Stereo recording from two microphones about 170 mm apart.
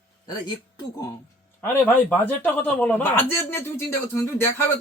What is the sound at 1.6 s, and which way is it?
A man's voice, 10° left (ahead or behind).